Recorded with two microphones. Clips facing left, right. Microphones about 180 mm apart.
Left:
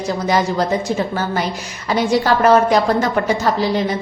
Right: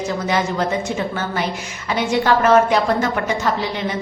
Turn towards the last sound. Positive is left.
turn(degrees=35)  # may be behind; listen again after turning